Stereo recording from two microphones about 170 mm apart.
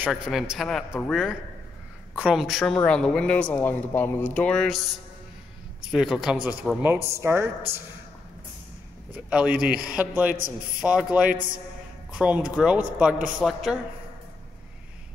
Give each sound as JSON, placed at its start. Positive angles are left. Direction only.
{"t": 0.0, "sound": "speech", "side_deg": 0}
{"t": 9.3, "sound": "speech", "side_deg": -5}